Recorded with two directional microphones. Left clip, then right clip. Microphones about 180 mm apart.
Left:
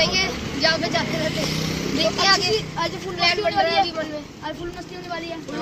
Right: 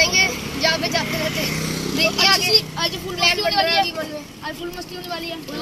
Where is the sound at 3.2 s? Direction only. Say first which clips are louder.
Right 2 dB; 5° right (ahead or behind).